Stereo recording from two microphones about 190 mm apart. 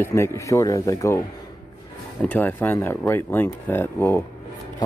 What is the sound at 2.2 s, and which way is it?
Speech, 10° left (ahead or behind).